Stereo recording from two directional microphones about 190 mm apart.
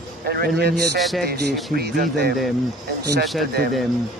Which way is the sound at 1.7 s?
55° right (ahead or behind).